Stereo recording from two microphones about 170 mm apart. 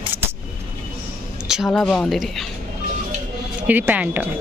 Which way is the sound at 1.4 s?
Centre (ahead or behind).